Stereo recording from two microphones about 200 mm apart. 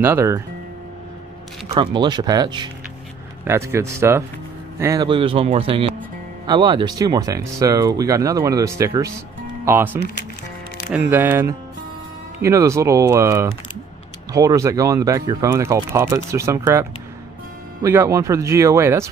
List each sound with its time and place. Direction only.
0.0 s speech: 10° right (ahead or behind)
1.7 s speech: 25° right (ahead or behind)
10.9 s speech: 10° right (ahead or behind)
17.8 s speech: 15° right (ahead or behind)